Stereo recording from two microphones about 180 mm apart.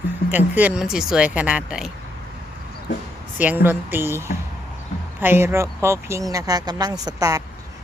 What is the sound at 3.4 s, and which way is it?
Speech, 10° right (ahead or behind).